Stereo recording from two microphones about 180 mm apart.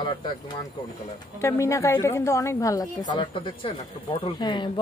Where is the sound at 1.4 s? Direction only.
15° left (ahead or behind).